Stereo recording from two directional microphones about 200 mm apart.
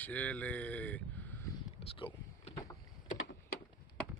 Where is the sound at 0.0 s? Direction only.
5° left (ahead or behind).